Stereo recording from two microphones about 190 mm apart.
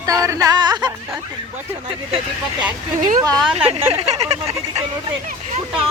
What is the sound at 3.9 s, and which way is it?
Speech, 35° right (ahead or behind).